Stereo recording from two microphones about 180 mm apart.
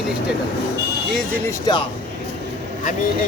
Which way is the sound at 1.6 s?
25° left (ahead or behind).